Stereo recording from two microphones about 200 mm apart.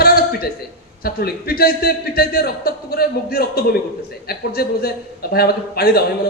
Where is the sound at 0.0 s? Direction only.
50° left (ahead or behind).